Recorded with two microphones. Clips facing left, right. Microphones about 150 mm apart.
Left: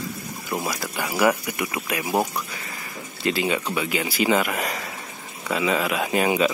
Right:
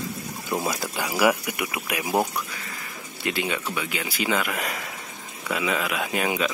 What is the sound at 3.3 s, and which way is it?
Speech, centre (ahead or behind).